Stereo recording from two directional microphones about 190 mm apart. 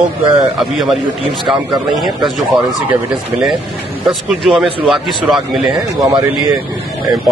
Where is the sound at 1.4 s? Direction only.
Centre (ahead or behind).